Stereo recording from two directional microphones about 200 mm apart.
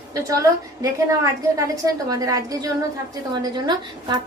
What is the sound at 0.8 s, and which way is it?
A woman's voice, 15° right (ahead or behind).